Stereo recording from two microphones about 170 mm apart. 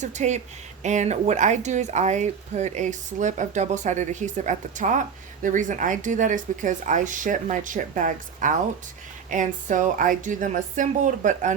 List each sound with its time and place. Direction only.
0.0 s speech: 45° right (ahead or behind)